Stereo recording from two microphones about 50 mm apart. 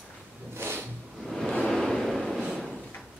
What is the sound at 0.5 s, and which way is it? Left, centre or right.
Vehicle, right.